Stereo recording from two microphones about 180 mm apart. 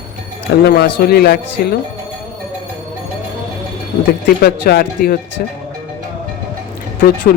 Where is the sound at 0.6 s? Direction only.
60° left (ahead or behind).